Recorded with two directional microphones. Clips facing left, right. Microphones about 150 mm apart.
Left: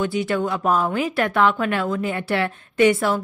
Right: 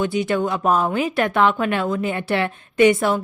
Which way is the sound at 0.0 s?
20° right (ahead or behind).